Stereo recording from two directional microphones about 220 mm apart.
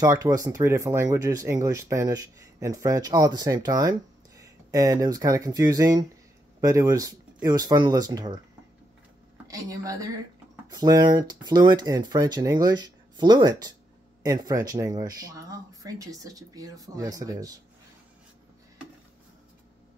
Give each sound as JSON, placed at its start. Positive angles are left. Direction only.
{"t": 0.0, "sound": "speech", "side_deg": -15}
{"t": 9.5, "sound": "speech", "side_deg": -15}